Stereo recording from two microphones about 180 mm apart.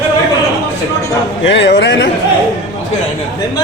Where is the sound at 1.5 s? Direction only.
80° left.